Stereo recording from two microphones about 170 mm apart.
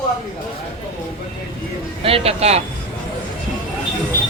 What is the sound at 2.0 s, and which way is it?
Speech, 35° right (ahead or behind).